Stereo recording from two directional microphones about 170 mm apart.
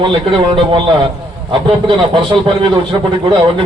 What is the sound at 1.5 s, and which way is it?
Speech, 30° right (ahead or behind).